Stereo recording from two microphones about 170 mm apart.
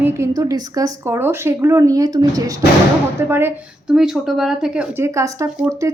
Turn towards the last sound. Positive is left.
turn(degrees=-5)  # may be behind; listen again after turning